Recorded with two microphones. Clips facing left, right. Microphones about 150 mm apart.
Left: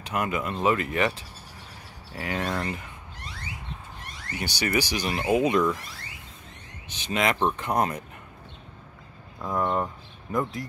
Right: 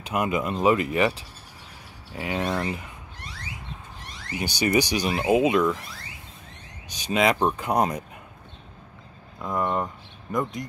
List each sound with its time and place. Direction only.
0.1 s speech: 15° right (ahead or behind)
2.1 s speech: 20° right (ahead or behind)
4.3 s speech: 15° right (ahead or behind)
6.9 s speech: 15° right (ahead or behind)
9.4 s speech: centre (ahead or behind)